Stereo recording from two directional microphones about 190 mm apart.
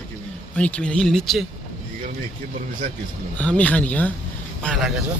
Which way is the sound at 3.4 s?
5° left (ahead or behind).